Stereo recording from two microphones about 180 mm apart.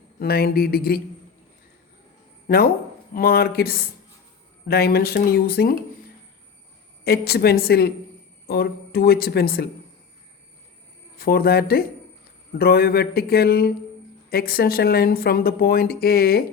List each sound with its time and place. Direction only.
0.2 s speech: 60° left (ahead or behind)
3.2 s speech: 55° left (ahead or behind)
7.0 s speech: 60° left (ahead or behind)
11.2 s speech: 60° left (ahead or behind)